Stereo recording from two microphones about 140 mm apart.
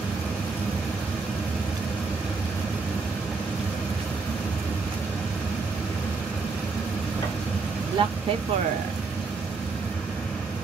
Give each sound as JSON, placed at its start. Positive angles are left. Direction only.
{"t": 8.0, "sound": "speech", "side_deg": -35}